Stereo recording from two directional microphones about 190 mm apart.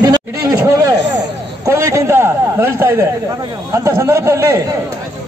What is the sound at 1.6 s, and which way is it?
A man's voice, 15° right (ahead or behind).